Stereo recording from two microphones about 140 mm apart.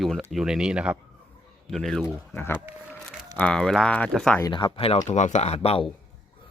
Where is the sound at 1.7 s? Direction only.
5° left (ahead or behind).